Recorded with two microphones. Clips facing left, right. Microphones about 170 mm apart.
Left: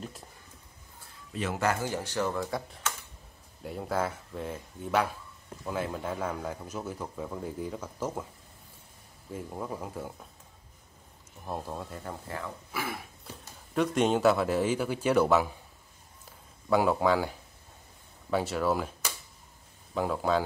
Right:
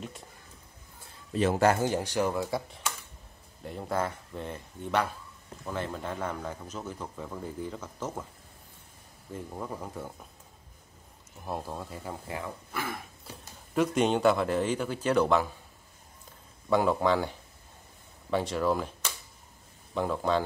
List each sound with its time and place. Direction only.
1.3 s speech: 35° right (ahead or behind)
1.9 s speech: 15° right (ahead or behind); by 8.3 s 10° left (ahead or behind)
9.3 s speech: 5° left (ahead or behind)
11.4 s speech: 5° right (ahead or behind)
12.7 s speech: 5° left (ahead or behind)
16.6 s speech: 5° left (ahead or behind)